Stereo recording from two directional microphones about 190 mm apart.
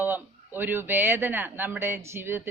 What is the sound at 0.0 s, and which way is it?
A woman's voice, 10° right (ahead or behind).